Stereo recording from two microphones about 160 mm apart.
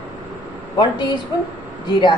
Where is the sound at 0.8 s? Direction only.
30° left (ahead or behind).